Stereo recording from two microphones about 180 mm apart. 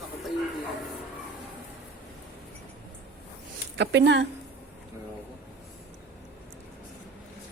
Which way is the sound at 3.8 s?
75° right (ahead or behind).